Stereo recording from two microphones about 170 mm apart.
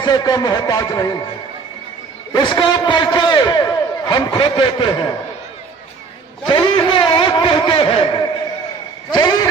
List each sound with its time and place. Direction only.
0.0 s a man's voice: 25° left (ahead or behind)
2.3 s a man's voice: 25° left (ahead or behind)
6.5 s a man's voice: 30° left (ahead or behind)